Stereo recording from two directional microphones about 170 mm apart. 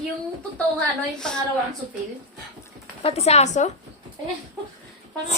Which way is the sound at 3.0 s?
35° left (ahead or behind).